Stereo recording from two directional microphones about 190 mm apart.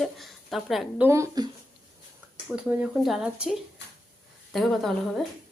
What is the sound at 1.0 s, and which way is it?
Speech, 15° right (ahead or behind).